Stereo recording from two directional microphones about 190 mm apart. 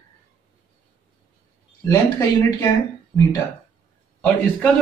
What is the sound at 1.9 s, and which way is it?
Speech, 15° left (ahead or behind).